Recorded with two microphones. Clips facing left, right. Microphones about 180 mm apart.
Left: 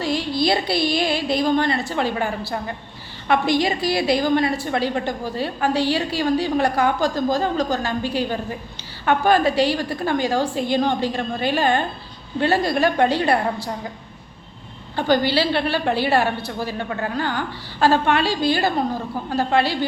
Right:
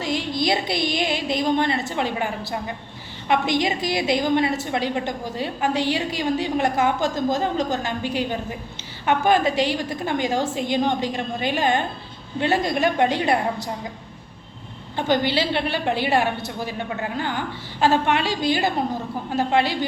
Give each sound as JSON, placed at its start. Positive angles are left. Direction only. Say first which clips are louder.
{"t": 0.0, "sound": "a woman's voice", "louder": "left 3 dB", "side_deg": -20}
{"t": 14.9, "sound": "a woman's voice", "louder": "left 2 dB", "side_deg": -20}